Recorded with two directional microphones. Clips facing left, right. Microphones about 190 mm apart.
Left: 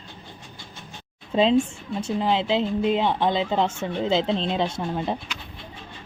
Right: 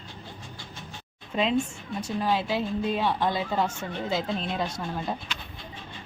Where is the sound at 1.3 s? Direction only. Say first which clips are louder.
Left 6 dB; 30° left (ahead or behind).